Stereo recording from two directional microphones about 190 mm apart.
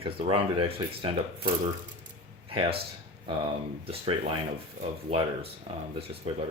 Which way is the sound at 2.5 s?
30° right (ahead or behind).